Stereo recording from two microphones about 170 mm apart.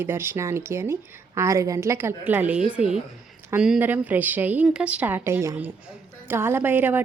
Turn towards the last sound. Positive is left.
turn(degrees=-10)  # may be behind; listen again after turning